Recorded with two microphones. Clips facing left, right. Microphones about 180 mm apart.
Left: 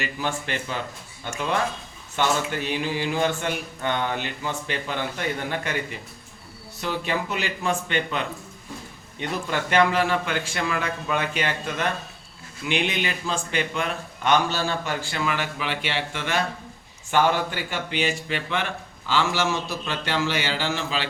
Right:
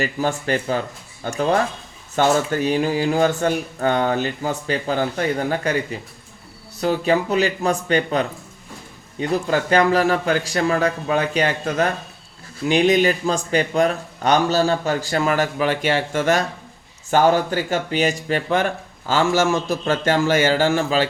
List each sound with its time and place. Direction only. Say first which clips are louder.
0.0 s speech: right 7 dB; 40° right (ahead or behind)
6.8 s speech: right 8 dB; 40° right (ahead or behind)